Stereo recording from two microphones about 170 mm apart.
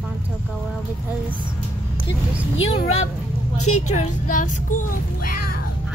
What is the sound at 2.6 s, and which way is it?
Speech, 35° left (ahead or behind).